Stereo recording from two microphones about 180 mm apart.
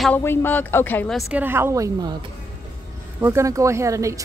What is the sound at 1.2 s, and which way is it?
Speech, 5° right (ahead or behind).